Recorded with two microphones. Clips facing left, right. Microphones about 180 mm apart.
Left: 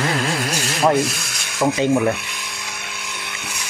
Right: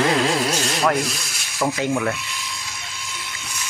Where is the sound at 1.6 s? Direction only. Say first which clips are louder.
Left 4 dB; 20° left (ahead or behind).